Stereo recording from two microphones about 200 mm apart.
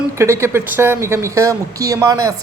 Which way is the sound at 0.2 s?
15° right (ahead or behind).